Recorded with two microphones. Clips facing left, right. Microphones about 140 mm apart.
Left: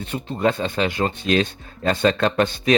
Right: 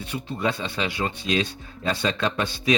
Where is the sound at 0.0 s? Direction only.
50° left (ahead or behind).